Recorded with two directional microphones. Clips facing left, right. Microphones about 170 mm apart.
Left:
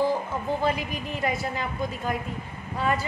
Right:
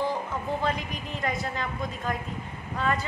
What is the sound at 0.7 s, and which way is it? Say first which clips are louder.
A woman's voice: left 3 dB; 5° left (ahead or behind).